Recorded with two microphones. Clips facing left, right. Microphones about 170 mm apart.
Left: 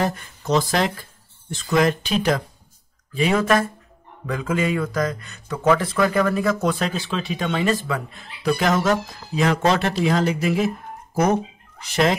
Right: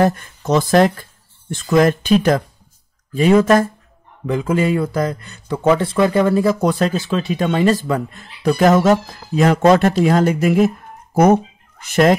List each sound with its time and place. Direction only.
0.0 s speech: 50° right (ahead or behind)
4.3 s speech: 30° right (ahead or behind); by 10.7 s 50° right (ahead or behind)
11.8 s speech: 50° right (ahead or behind)